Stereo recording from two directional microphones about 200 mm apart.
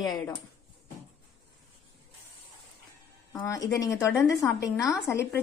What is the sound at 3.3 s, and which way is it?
A woman's voice, 15° left (ahead or behind).